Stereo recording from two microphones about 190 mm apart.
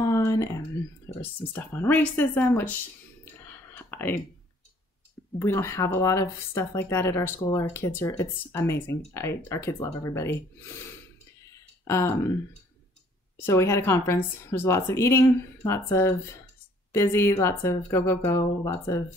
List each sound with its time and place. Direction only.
0.0 s a sound: 15° left (ahead or behind)
1.5 s speech: 10° left (ahead or behind)
3.7 s whispering: 10° left (ahead or behind)
5.4 s speech: 15° left (ahead or behind)
13.4 s speech: 15° left (ahead or behind)